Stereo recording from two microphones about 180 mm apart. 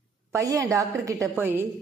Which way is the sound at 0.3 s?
20° right (ahead or behind).